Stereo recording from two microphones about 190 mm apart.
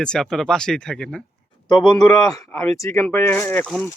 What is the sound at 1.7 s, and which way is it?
Speech, 25° left (ahead or behind).